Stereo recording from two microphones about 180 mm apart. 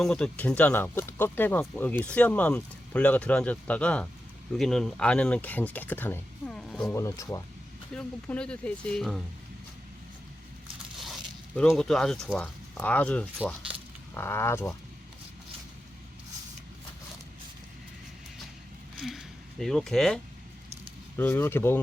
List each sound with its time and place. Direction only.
0.0 s speech: 5° left (ahead or behind)
6.9 s speech: 15° left (ahead or behind)
7.9 s speech: 5° left (ahead or behind)
10.9 s a sound: centre (ahead or behind)
11.7 s speech: centre (ahead or behind)
18.9 s speech: centre (ahead or behind)
21.2 s speech: 10° left (ahead or behind)